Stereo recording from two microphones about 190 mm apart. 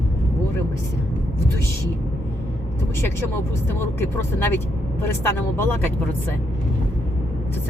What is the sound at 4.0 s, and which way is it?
Speech, 10° left (ahead or behind).